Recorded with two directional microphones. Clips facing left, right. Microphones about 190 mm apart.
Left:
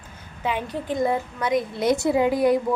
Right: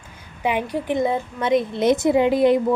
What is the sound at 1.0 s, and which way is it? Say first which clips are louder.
A woman's voice: left 1 dB; 25° right (ahead or behind).